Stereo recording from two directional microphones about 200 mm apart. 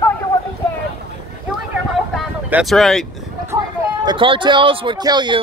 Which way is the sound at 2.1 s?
Centre (ahead or behind).